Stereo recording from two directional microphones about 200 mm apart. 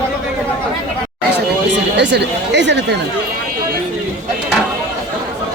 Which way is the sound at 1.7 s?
60° right (ahead or behind).